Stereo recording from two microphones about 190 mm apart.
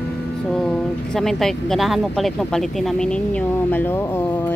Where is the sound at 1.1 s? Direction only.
Centre (ahead or behind).